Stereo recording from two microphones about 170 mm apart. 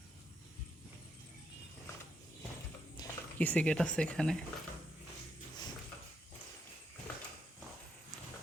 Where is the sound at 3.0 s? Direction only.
25° left (ahead or behind).